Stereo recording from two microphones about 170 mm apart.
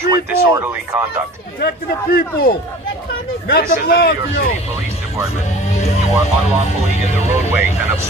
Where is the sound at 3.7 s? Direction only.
60° left (ahead or behind).